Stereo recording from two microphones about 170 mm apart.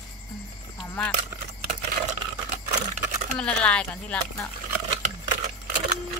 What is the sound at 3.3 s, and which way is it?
Speech, 5° left (ahead or behind).